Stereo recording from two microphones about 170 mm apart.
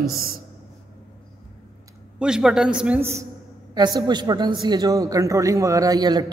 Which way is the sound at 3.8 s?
25° right (ahead or behind).